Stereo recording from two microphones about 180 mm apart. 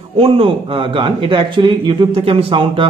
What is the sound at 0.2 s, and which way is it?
A man's voice, 30° right (ahead or behind).